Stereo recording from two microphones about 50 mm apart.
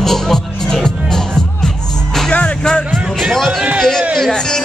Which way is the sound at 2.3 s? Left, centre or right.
Left.